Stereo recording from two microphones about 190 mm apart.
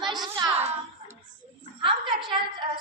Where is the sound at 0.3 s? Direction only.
25° right (ahead or behind).